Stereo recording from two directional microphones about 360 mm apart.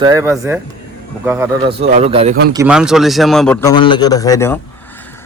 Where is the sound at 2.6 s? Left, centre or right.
Centre.